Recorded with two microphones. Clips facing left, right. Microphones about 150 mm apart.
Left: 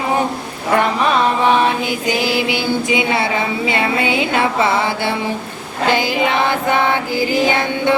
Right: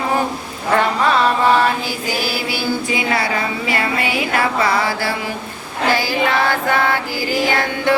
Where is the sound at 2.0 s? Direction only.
20° left (ahead or behind).